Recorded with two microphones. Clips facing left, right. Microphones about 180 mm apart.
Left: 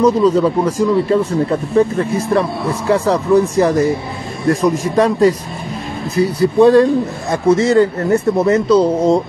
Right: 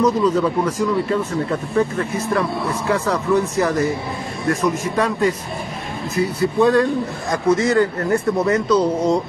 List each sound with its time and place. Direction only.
0.0 s a man's voice: 30° left (ahead or behind)